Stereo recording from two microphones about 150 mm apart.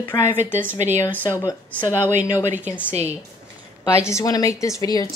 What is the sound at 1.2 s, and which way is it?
Speech, 20° left (ahead or behind).